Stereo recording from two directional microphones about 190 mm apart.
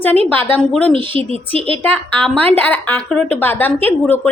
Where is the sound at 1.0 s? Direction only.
30° right (ahead or behind).